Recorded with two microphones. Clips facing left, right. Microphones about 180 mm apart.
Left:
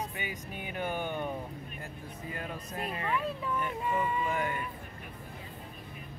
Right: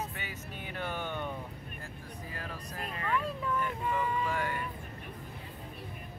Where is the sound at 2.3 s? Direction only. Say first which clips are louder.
Left 5 dB; 20° left (ahead or behind).